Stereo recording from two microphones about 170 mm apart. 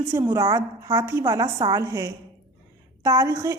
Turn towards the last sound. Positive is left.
turn(degrees=-15)  # may be behind; listen again after turning